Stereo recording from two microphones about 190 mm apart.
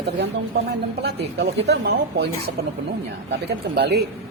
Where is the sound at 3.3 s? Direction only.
60° right (ahead or behind).